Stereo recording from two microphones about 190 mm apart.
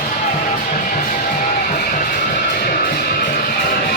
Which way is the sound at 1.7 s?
45° left (ahead or behind).